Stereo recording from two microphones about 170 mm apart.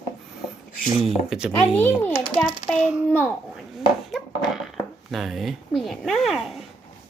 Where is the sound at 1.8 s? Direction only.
10° left (ahead or behind).